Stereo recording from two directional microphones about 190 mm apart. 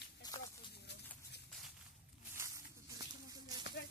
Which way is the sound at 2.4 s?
15° right (ahead or behind).